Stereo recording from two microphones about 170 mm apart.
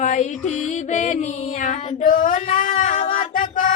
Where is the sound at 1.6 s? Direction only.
50° left (ahead or behind).